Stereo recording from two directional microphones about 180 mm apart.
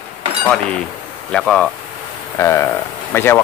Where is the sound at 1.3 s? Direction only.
5° left (ahead or behind).